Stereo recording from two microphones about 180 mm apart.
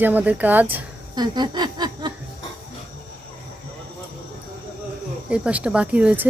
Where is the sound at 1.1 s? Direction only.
25° right (ahead or behind).